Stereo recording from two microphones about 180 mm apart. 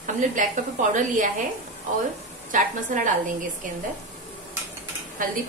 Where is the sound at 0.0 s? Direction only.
45° right (ahead or behind).